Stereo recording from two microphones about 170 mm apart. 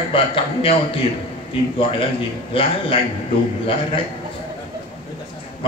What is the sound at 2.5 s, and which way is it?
Speech, 30° left (ahead or behind).